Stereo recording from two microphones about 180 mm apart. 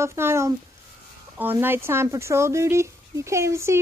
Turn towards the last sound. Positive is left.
turn(degrees=-15)  # may be behind; listen again after turning